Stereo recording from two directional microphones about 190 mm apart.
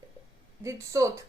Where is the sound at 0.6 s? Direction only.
15° right (ahead or behind).